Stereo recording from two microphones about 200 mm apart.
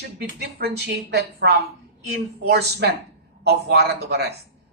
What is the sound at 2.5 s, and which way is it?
A woman's voice, 55° right (ahead or behind).